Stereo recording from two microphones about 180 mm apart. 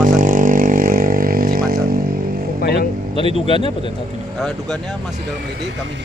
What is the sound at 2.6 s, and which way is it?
Vehicle, 60° left (ahead or behind).